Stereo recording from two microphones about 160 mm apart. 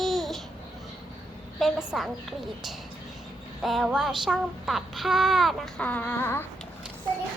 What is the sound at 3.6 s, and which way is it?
Child singing, centre (ahead or behind).